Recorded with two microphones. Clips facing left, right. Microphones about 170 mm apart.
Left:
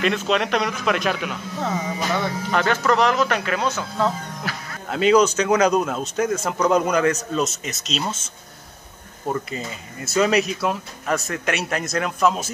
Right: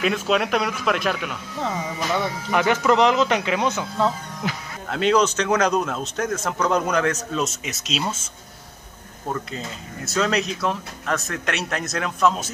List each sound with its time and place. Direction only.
0.0 s speech: 5° right (ahead or behind)
2.5 s speech: 15° right (ahead or behind)
4.8 s speech: 5° left (ahead or behind)
9.3 s speech: 5° left (ahead or behind)